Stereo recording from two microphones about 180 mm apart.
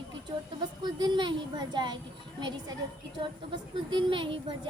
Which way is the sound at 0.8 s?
25° right (ahead or behind).